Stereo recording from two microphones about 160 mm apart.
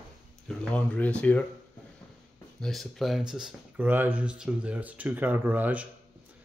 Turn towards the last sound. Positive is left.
turn(degrees=-10)  # may be behind; listen again after turning